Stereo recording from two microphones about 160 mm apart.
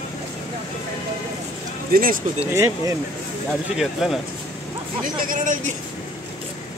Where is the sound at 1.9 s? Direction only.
60° right (ahead or behind).